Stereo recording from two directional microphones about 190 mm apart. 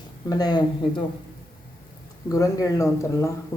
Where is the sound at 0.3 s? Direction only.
20° left (ahead or behind).